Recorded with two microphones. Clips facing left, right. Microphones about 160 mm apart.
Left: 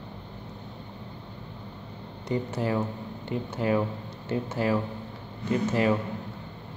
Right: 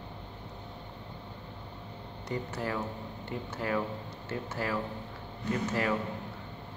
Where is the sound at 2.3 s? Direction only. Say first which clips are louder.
Left 6 dB; 20° left (ahead or behind).